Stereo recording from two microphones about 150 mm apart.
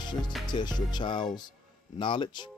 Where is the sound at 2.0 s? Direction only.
30° left (ahead or behind).